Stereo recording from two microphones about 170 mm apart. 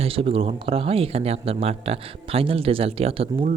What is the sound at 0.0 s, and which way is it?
Speech, 35° right (ahead or behind).